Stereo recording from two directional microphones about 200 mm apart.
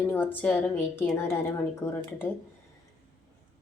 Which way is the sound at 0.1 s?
10° left (ahead or behind).